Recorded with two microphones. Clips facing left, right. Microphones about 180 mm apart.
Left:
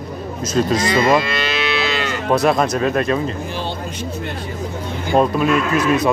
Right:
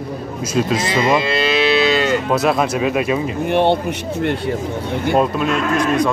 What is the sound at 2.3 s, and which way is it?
Speech, 5° right (ahead or behind).